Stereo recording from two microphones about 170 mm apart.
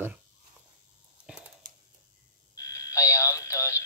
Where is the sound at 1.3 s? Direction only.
5° right (ahead or behind).